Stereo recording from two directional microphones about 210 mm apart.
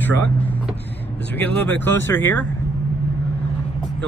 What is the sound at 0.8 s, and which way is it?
Vehicle, 55° left (ahead or behind).